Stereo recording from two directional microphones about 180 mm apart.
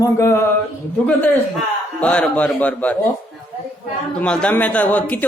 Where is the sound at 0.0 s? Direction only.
15° left (ahead or behind).